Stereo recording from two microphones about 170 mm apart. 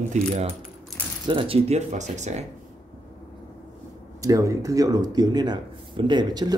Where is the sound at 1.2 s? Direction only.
30° right (ahead or behind).